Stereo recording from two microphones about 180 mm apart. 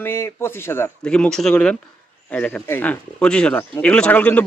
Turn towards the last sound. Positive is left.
turn(degrees=10)  # may be behind; listen again after turning